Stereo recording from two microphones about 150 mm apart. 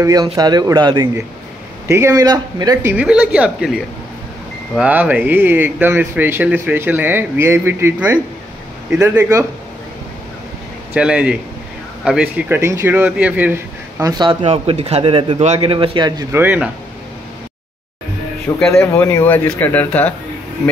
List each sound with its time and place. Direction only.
0.0 s speech: 25° right (ahead or behind)
1.9 s speech: 15° right (ahead or behind)
10.9 s speech: 5° right (ahead or behind)
12.4 s speech: 15° right (ahead or behind)
14.0 s speech: 30° right (ahead or behind)
14.4 s a man's voice: 40° right (ahead or behind)
16.3 s speech: 15° right (ahead or behind)
18.8 s speech: 15° left (ahead or behind)